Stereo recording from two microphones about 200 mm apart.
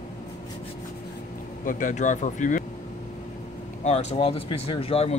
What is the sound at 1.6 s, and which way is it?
Speech, 40° left (ahead or behind).